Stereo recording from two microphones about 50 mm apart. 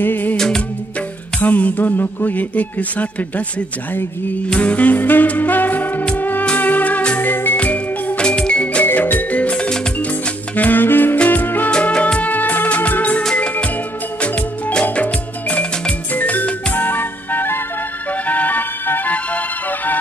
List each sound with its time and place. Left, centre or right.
0.0 s music: left
1.4 s speech: left
4.6 s music: left
7.2 s music: left
7.5 s music: left
8.2 s music: centre
8.8 s music: left
10.5 s saxophone: left
11.2 s music: left
11.9 s music: centre
12.2 s music: left
14.2 s music: left
16.2 s music: left